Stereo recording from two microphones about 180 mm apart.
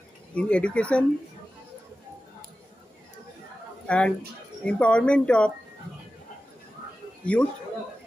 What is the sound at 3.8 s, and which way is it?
A man's voice, 5° left (ahead or behind).